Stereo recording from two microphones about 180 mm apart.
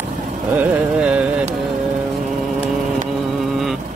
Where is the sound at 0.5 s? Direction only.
5° right (ahead or behind).